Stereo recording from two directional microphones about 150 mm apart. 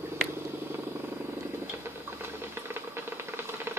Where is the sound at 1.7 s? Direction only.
15° right (ahead or behind).